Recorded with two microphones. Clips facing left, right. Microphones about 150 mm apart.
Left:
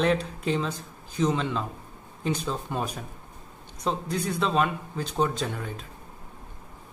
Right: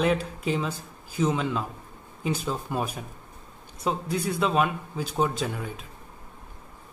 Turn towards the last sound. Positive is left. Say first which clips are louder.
# right 1 dB
turn(degrees=-5)  # may be behind; listen again after turning